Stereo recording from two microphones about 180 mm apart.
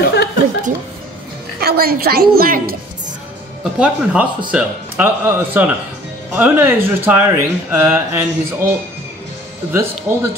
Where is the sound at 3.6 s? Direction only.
5° right (ahead or behind).